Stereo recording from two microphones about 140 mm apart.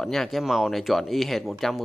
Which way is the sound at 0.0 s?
Centre (ahead or behind).